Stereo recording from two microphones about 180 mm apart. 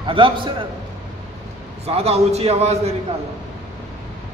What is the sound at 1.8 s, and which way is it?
A man's voice, 35° right (ahead or behind).